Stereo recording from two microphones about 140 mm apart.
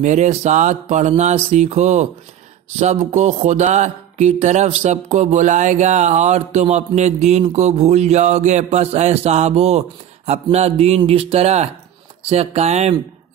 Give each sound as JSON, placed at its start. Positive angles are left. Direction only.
{"t": 0.0, "sound": "speech", "side_deg": -55}
{"t": 2.8, "sound": "mantra", "side_deg": -50}